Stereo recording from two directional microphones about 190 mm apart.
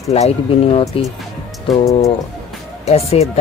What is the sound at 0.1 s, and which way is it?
Speech, 30° left (ahead or behind).